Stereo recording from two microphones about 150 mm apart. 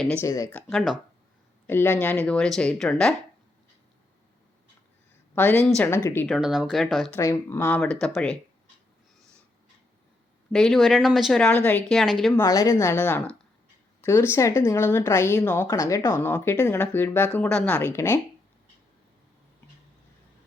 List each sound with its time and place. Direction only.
0.1 s speech: 20° left (ahead or behind)
0.5 s speech: 5° left (ahead or behind)
1.6 s speech: 15° left (ahead or behind)
5.3 s speech: 15° left (ahead or behind)
6.2 s speech: centre (ahead or behind)
7.2 s speech: 20° left (ahead or behind)
7.8 s speech: 5° left (ahead or behind)
10.5 s speech: 5° left (ahead or behind)
12.4 s speech: 20° left (ahead or behind)